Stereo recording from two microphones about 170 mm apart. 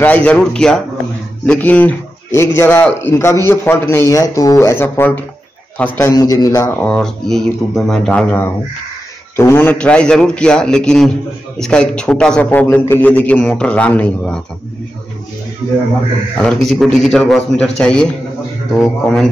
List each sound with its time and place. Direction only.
0.0 s a man's voice: 10° left (ahead or behind)
6.1 s a man's voice: 20° left (ahead or behind)
6.8 s a man's voice: 5° left (ahead or behind)
16.3 s a man's voice: 5° left (ahead or behind)